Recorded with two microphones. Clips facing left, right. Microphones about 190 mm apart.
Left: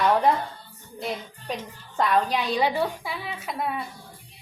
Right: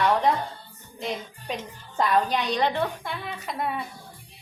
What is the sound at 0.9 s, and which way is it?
A woman's voice, 5° left (ahead or behind).